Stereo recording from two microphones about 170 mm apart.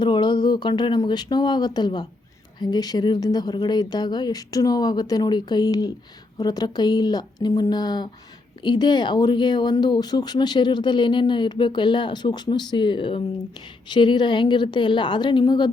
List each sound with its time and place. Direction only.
0.0 s speech: 25° left (ahead or behind)